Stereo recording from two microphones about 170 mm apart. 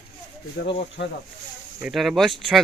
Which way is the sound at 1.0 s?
75° left (ahead or behind).